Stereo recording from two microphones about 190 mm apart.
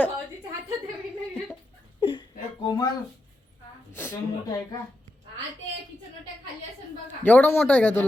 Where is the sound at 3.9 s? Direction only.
10° left (ahead or behind).